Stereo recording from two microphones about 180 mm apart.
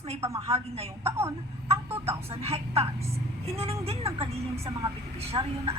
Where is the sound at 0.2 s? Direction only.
15° right (ahead or behind).